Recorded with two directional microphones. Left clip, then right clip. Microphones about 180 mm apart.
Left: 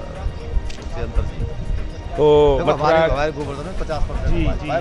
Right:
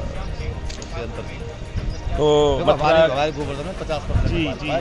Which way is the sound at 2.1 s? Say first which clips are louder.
Left 3 dB; 45° left (ahead or behind).